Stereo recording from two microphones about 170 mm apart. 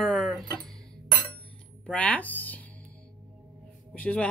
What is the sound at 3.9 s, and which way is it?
Speech, 5° left (ahead or behind).